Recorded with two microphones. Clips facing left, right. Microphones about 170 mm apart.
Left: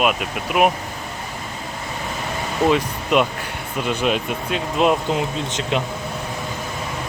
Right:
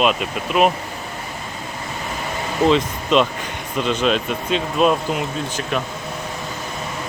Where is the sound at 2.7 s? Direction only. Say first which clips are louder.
Right 2 dB; 10° left (ahead or behind).